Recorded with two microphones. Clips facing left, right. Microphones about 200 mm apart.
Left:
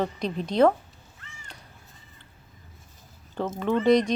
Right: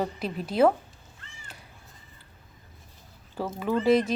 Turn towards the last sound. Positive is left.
turn(degrees=-5)  # may be behind; listen again after turning